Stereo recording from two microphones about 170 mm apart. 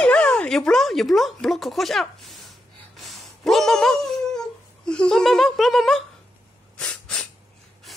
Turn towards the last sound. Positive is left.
turn(degrees=5)  # may be behind; listen again after turning